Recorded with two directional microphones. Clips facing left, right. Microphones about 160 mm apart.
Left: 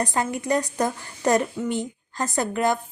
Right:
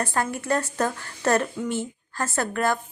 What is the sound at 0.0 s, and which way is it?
A woman's voice, 15° left (ahead or behind).